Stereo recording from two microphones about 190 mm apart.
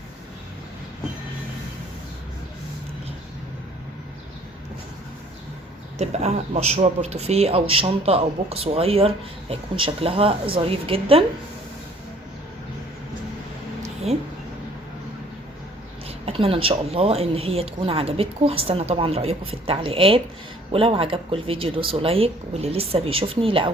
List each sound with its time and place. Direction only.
6.0 s speech: 35° right (ahead or behind)
14.1 s speech: 35° right (ahead or behind)
16.0 s speech: 30° right (ahead or behind)